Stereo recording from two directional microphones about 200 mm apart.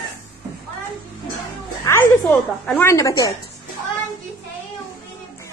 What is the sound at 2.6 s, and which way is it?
Speech, 10° left (ahead or behind).